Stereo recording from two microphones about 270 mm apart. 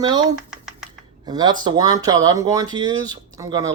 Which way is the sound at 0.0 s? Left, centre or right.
Centre.